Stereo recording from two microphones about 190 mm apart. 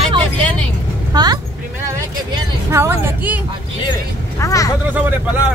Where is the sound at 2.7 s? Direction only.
15° right (ahead or behind).